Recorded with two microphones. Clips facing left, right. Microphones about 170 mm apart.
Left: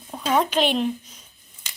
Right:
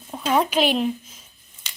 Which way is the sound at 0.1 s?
5° right (ahead or behind).